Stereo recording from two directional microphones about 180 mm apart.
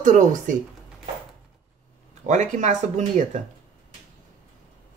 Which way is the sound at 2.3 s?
40° right (ahead or behind).